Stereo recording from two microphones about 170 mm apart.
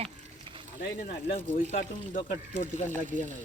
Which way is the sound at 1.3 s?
45° left (ahead or behind).